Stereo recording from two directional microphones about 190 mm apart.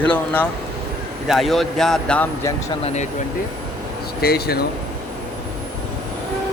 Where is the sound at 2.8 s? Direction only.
35° left (ahead or behind).